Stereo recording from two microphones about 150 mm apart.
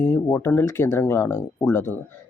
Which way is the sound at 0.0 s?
20° left (ahead or behind).